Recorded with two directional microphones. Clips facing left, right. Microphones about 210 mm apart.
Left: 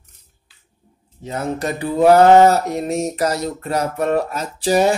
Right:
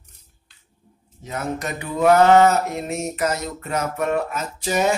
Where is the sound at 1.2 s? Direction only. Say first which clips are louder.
Left 4 dB; 30° left (ahead or behind).